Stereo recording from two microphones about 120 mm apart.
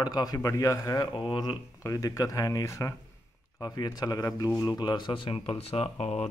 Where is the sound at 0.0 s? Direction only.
35° left (ahead or behind).